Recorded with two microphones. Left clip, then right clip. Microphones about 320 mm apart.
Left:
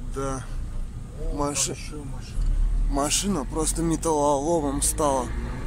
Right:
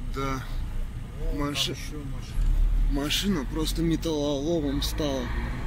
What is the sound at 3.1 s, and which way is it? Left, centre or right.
Speech, centre.